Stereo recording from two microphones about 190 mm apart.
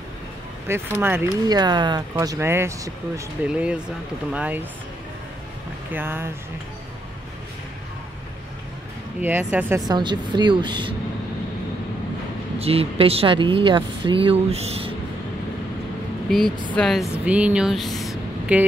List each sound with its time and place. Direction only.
0.7 s speech: 15° right (ahead or behind)
5.9 s speech: 10° right (ahead or behind)
9.2 s speech: 10° right (ahead or behind)
9.8 s a woman's voice: 20° right (ahead or behind)
12.5 s speech: 30° right (ahead or behind)
16.3 s speech: centre (ahead or behind)